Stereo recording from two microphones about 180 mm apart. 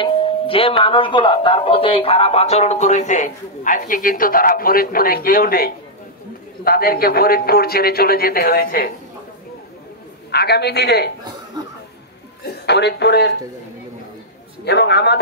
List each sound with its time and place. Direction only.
0.0 s a man's voice: 30° left (ahead or behind); by 8.9 s 55° left (ahead or behind)
10.3 s a man's voice: 65° left (ahead or behind)
12.4 s speech: 70° left (ahead or behind)
14.6 s a man's voice: 70° left (ahead or behind)